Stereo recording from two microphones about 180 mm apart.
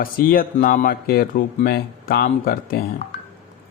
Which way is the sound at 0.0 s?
55° left (ahead or behind).